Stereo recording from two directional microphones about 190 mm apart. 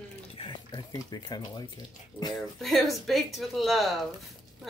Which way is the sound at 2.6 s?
Centre (ahead or behind).